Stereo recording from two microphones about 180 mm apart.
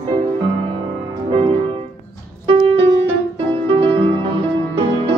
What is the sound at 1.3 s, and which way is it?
Music, 30° right (ahead or behind).